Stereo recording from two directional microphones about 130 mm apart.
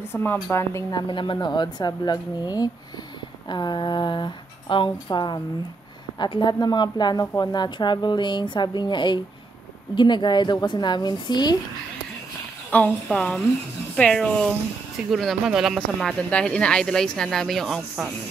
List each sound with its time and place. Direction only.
0.1 s a woman's voice: 15° left (ahead or behind)
0.9 s a woman's voice: 40° left (ahead or behind)
12.7 s a woman's voice: 10° left (ahead or behind)